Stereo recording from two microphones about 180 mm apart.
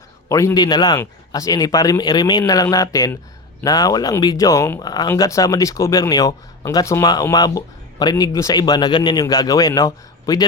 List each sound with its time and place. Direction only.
0.3 s speech: 15° left (ahead or behind)